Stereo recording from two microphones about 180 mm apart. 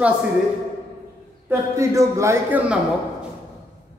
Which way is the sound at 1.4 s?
15° right (ahead or behind).